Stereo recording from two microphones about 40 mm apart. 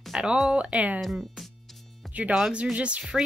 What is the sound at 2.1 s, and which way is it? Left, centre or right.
Music, right.